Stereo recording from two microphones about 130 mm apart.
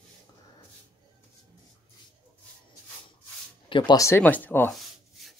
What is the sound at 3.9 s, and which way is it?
Speech, 20° left (ahead or behind).